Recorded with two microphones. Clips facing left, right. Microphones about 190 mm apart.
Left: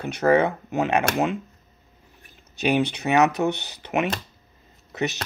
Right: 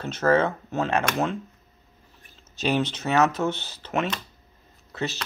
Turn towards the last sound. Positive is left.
turn(degrees=20)  # may be behind; listen again after turning